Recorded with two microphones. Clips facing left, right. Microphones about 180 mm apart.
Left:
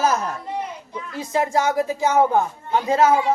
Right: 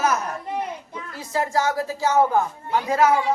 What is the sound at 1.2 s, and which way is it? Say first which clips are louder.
Speech: left 2 dB; 20° left (ahead or behind).